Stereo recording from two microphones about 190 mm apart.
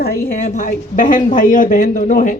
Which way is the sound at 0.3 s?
40° left (ahead or behind).